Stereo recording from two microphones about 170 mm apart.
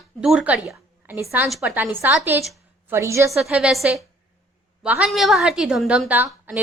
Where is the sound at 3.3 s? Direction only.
5° right (ahead or behind).